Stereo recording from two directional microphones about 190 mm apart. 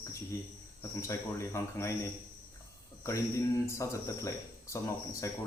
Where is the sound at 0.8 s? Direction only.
15° left (ahead or behind).